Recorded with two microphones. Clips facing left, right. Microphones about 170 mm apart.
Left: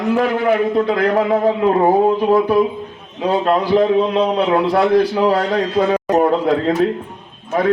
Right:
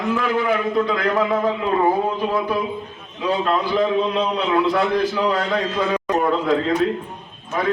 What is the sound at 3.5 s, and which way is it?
Speech, 40° left (ahead or behind).